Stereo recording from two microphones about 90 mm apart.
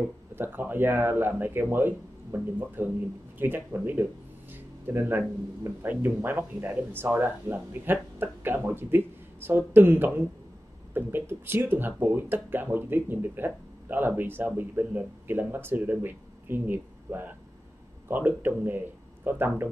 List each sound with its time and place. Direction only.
0.4 s speech: 20° right (ahead or behind)